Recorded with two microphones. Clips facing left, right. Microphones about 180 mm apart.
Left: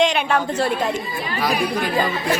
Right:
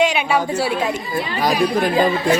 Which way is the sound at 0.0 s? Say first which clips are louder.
Right 1 dB; 5° right (ahead or behind).